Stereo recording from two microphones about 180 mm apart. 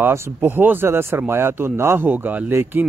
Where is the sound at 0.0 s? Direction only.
15° right (ahead or behind).